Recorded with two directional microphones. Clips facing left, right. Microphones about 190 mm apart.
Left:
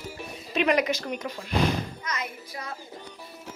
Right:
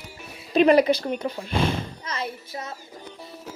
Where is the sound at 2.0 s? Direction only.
30° right (ahead or behind).